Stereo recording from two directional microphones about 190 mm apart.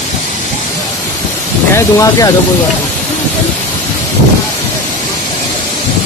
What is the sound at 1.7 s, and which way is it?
Speech, 20° left (ahead or behind).